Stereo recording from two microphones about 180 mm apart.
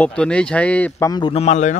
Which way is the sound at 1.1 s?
30° left (ahead or behind).